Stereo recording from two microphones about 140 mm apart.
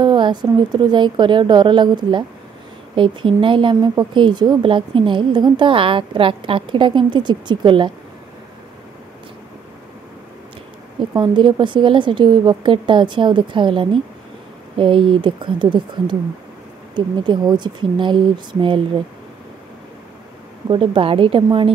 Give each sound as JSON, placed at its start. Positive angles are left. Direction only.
{"t": 0.0, "sound": "a woman's voice", "side_deg": -30}
{"t": 11.0, "sound": "a woman's voice", "side_deg": -35}
{"t": 20.6, "sound": "a woman's voice", "side_deg": -40}